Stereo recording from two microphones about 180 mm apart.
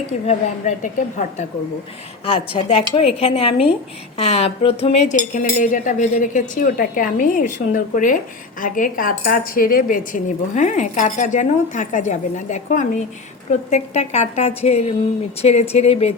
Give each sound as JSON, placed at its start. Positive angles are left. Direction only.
{"t": 0.3, "sound": "speech", "side_deg": 45}
{"t": 2.2, "sound": "a woman's voice", "side_deg": 30}